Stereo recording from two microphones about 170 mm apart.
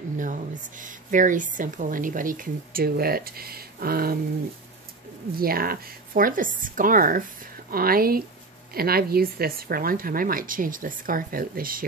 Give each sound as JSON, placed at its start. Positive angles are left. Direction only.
{"t": 0.2, "sound": "a woman's voice", "side_deg": -50}
{"t": 5.4, "sound": "speech", "side_deg": -60}